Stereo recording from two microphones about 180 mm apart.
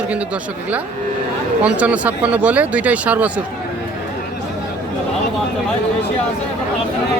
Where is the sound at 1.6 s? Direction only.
5° right (ahead or behind).